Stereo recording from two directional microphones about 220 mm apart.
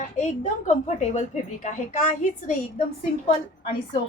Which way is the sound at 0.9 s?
35° left (ahead or behind).